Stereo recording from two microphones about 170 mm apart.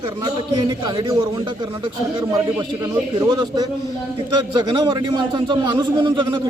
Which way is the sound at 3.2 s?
25° right (ahead or behind).